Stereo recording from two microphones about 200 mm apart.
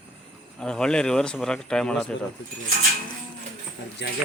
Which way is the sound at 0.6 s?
5° left (ahead or behind).